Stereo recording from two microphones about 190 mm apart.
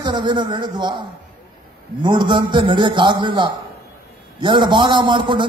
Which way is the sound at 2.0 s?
25° right (ahead or behind).